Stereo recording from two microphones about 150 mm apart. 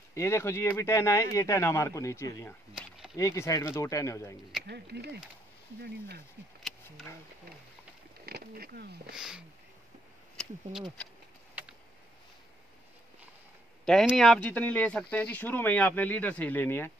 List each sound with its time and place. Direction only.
0.1 s speech: 20° left (ahead or behind)
4.6 s speech: 90° right
8.3 s speech: 90° right
9.1 s speech: 5° right (ahead or behind)
14.1 s speech: 5° left (ahead or behind)